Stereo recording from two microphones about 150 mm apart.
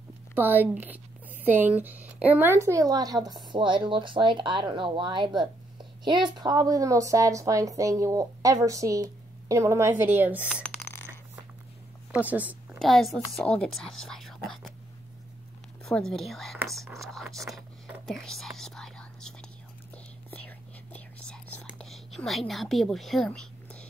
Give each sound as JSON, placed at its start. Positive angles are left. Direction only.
{"t": 0.3, "sound": "a woman's voice", "side_deg": -15}
{"t": 10.6, "sound": "a sound", "side_deg": 15}
{"t": 12.1, "sound": "a woman's voice", "side_deg": -10}
{"t": 12.7, "sound": "a woman's voice", "side_deg": 0}
{"t": 15.8, "sound": "speech", "side_deg": 5}
{"t": 18.6, "sound": "whispering", "side_deg": 5}